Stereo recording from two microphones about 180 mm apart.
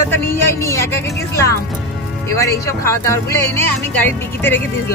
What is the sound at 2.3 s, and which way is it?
Speech, 15° left (ahead or behind).